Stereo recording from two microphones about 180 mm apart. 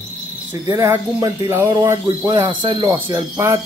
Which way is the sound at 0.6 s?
15° right (ahead or behind).